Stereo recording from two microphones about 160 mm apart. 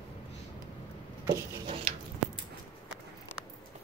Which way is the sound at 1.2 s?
20° right (ahead or behind).